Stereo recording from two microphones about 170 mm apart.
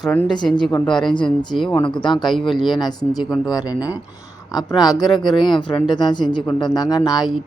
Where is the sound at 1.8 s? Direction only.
30° left (ahead or behind).